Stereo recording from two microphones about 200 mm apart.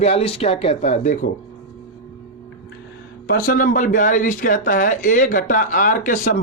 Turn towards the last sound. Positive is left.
turn(degrees=40)  # may be behind; listen again after turning